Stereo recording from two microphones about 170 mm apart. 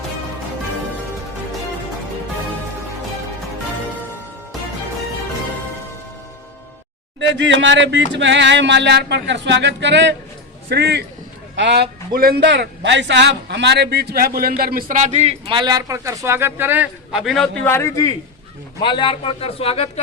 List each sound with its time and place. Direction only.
7.2 s a sound: 90° right
10.7 s a man's voice: 75° right (ahead or behind); by 17.5 s centre (ahead or behind)
17.7 s a man's voice: 15° left (ahead or behind)
18.8 s a man's voice: 30° left (ahead or behind)